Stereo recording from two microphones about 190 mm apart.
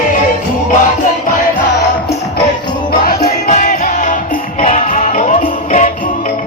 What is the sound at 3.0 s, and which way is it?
Music, 40° left (ahead or behind).